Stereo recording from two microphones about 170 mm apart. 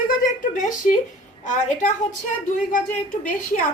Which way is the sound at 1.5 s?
50° left (ahead or behind).